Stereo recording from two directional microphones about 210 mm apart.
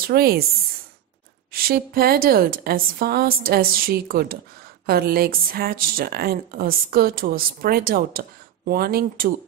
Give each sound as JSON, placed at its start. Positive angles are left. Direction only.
{"t": 0.0, "sound": "speech", "side_deg": -45}
{"t": 1.5, "sound": "speech", "side_deg": -45}